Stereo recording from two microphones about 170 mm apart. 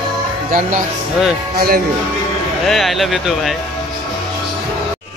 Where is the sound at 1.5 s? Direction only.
60° right (ahead or behind).